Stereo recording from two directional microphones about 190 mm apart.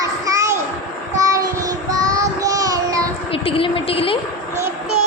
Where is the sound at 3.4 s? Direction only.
30° left (ahead or behind).